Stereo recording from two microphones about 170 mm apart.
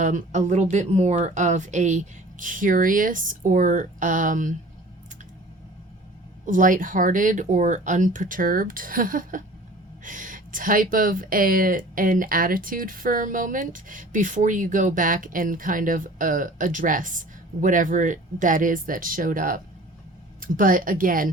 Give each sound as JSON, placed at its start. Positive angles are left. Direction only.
{"t": 0.0, "sound": "speech", "side_deg": -45}
{"t": 6.4, "sound": "speech", "side_deg": -50}